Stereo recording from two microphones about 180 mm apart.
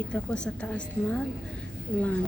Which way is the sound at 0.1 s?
5° left (ahead or behind).